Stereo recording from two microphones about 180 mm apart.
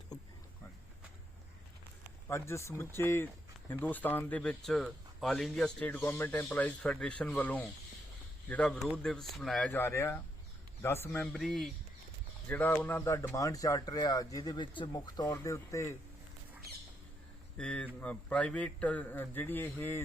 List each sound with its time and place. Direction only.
2.2 s speech: 15° left (ahead or behind)
17.6 s speech: 5° left (ahead or behind)